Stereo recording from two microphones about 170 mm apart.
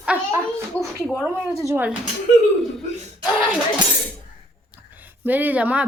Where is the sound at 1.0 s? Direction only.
Centre (ahead or behind).